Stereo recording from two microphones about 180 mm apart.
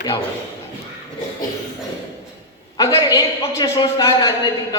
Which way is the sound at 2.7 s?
20° left (ahead or behind).